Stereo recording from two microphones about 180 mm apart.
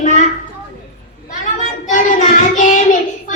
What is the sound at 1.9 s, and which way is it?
Child singing, 45° left (ahead or behind).